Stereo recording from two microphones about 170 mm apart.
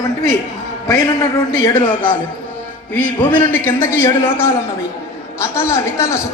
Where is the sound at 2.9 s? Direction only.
10° left (ahead or behind).